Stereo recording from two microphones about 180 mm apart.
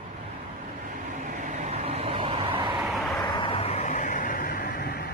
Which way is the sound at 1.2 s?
40° right (ahead or behind).